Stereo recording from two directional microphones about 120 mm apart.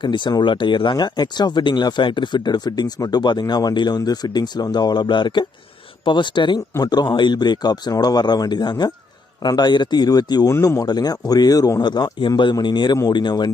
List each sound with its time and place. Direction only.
0.0 s speech: 40° left (ahead or behind)